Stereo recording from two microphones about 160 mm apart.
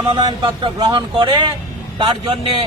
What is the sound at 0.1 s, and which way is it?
A man's voice, 30° right (ahead or behind).